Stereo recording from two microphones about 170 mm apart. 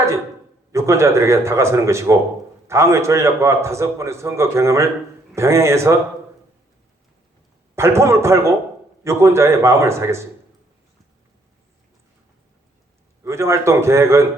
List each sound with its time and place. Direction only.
0.7 s a man's voice: 15° right (ahead or behind)
7.8 s a man's voice: 15° right (ahead or behind)
13.2 s a man's voice: 15° right (ahead or behind)